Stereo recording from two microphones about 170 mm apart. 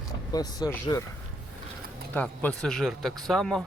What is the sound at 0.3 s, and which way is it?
Speech, 20° left (ahead or behind).